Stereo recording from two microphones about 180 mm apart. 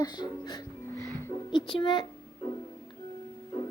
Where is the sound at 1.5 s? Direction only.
25° left (ahead or behind).